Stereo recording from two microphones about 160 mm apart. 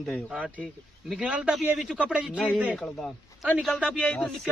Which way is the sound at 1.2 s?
5° right (ahead or behind).